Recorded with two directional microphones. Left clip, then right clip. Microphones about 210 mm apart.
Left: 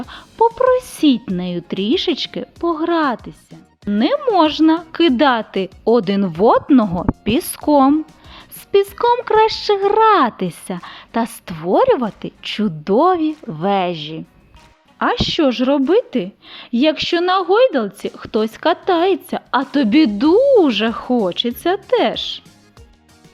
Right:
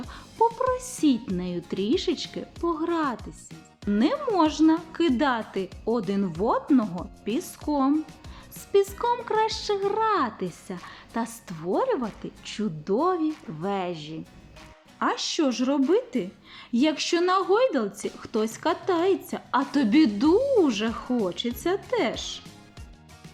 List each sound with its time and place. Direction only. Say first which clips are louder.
0.1 s a woman's voice: left 8 dB; 35° left (ahead or behind)